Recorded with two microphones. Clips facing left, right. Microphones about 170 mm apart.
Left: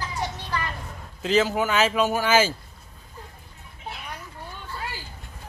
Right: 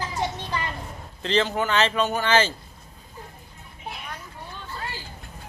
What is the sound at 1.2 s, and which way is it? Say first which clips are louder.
A man's voice: left 2 dB; 5° left (ahead or behind).